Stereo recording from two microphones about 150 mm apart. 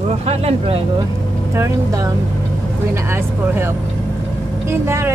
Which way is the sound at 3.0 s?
15° right (ahead or behind).